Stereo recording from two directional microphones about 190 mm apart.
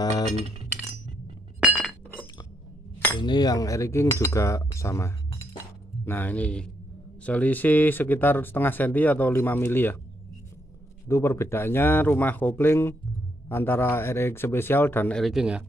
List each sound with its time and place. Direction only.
1.6 s glass: 5° right (ahead or behind)
3.2 s speech: 20° left (ahead or behind)
11.1 s speech: 15° left (ahead or behind); by 15.6 s 5° right (ahead or behind)